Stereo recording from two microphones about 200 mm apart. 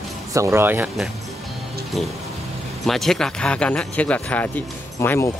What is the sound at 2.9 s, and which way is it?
Speech, centre (ahead or behind).